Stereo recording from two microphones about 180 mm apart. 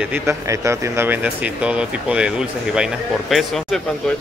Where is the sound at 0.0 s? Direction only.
10° right (ahead or behind).